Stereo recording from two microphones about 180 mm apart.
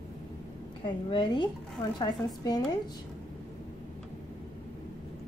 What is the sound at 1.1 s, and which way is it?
Speech, 25° left (ahead or behind).